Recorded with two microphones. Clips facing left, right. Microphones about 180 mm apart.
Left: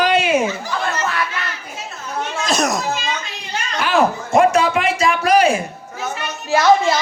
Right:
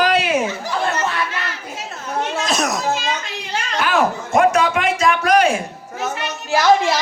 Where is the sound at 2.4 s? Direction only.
Centre (ahead or behind).